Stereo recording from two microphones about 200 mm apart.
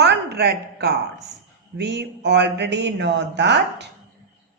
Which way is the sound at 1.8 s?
60° right (ahead or behind).